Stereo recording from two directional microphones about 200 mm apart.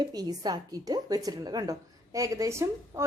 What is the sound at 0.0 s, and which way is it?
A woman's voice, 20° right (ahead or behind).